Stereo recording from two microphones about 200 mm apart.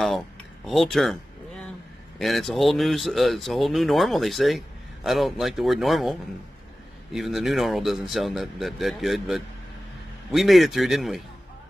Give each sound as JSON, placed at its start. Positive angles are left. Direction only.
{"t": 0.7, "sound": "speech", "side_deg": 0}
{"t": 2.1, "sound": "speech", "side_deg": 0}